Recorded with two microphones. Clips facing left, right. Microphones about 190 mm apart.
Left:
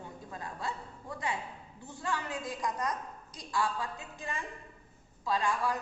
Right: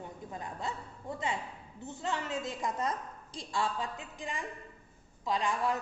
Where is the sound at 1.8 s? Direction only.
20° right (ahead or behind).